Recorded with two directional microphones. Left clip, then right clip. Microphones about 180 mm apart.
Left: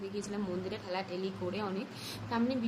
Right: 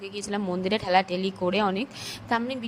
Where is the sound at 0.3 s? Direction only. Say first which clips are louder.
Right 10 dB; 45° right (ahead or behind).